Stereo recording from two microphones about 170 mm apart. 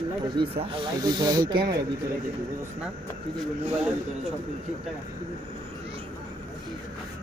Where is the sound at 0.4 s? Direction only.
30° right (ahead or behind).